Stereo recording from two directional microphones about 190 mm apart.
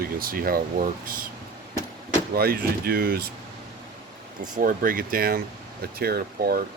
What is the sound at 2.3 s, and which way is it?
Speech, 55° right (ahead or behind).